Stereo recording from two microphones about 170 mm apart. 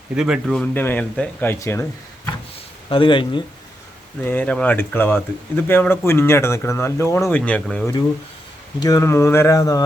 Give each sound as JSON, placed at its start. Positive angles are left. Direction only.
{"t": 0.2, "sound": "speech", "side_deg": 0}
{"t": 2.9, "sound": "speech", "side_deg": 30}
{"t": 4.2, "sound": "speech", "side_deg": 10}
{"t": 8.8, "sound": "speech", "side_deg": 20}